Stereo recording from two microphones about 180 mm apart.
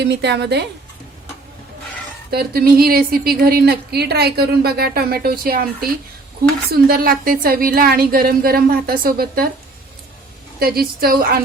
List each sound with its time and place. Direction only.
0.0 s speech: 70° right (ahead or behind)
2.3 s a woman's voice: 60° right (ahead or behind)
10.6 s a woman's voice: 60° right (ahead or behind)